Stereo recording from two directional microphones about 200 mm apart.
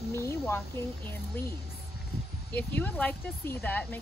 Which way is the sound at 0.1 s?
10° left (ahead or behind).